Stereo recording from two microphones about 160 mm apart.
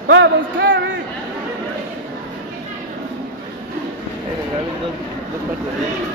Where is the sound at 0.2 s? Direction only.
90° right.